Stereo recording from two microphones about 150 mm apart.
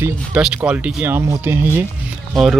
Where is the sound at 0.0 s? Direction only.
5° right (ahead or behind).